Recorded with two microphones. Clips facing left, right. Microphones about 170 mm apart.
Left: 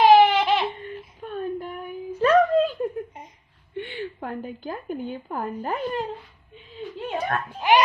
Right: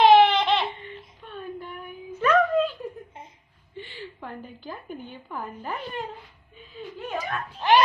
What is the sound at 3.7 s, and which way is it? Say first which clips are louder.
A woman's voice: left 8 dB; 60° left (ahead or behind).